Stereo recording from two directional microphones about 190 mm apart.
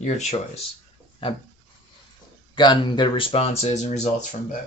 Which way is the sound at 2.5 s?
25° left (ahead or behind).